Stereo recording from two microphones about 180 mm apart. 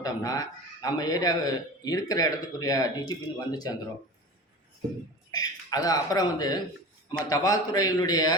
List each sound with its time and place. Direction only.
0.0 s a man's voice: 20° left (ahead or behind)
5.3 s a man's voice: 20° left (ahead or behind)